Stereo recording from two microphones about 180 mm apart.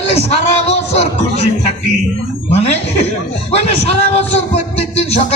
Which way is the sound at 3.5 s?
35° left (ahead or behind).